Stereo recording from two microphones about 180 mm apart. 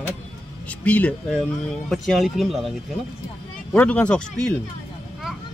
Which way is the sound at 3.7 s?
5° left (ahead or behind).